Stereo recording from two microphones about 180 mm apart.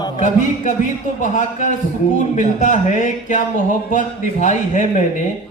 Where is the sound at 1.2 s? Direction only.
45° left (ahead or behind).